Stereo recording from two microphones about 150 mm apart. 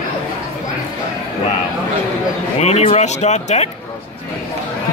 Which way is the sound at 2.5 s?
45° left (ahead or behind).